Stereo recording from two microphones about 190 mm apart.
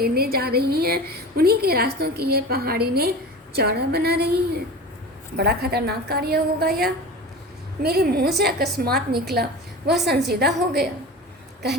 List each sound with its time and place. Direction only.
0.0 s a woman's voice: 55° right (ahead or behind)